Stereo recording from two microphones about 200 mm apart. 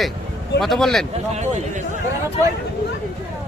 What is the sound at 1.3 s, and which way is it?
Speech, 35° right (ahead or behind).